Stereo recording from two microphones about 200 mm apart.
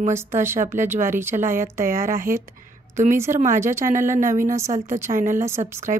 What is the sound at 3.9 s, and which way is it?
A woman's voice, 40° right (ahead or behind).